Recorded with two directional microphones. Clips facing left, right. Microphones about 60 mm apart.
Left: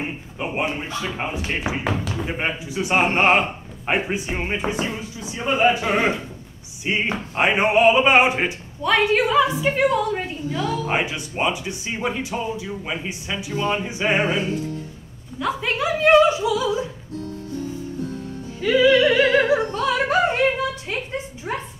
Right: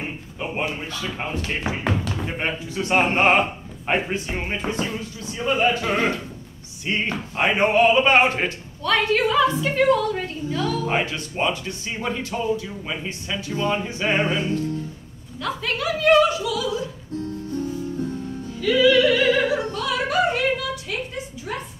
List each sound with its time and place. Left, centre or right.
0.0 s a sound: centre
0.7 s speech: left
1.9 s speech: centre; by 16.8 s left
18.6 s music: left
21.5 s a woman's voice: left